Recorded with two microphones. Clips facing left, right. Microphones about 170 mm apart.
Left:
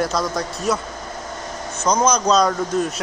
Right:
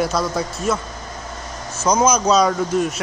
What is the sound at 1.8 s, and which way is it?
Speech, 5° right (ahead or behind).